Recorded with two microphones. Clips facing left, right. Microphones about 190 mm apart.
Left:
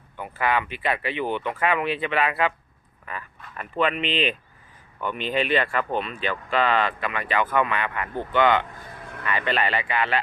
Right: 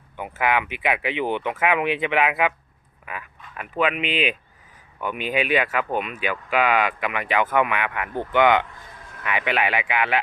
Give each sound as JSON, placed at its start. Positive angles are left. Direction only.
{"t": 0.2, "sound": "speech", "side_deg": -15}